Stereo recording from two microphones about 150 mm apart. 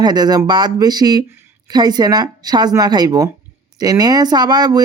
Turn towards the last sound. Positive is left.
turn(degrees=-25)  # may be behind; listen again after turning